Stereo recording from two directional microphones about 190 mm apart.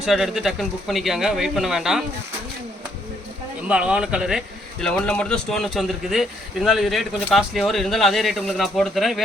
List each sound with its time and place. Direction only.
0.0 s a man's voice: centre (ahead or behind)
3.7 s a man's voice: 5° right (ahead or behind)